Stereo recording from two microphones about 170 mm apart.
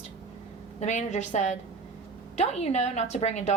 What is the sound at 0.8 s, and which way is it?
Speech, 40° left (ahead or behind).